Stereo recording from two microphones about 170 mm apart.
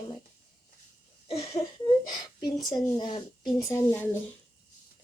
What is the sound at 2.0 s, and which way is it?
A woman's voice, 25° left (ahead or behind).